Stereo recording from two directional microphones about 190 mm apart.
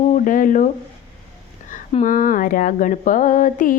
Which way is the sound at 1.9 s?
40° left (ahead or behind).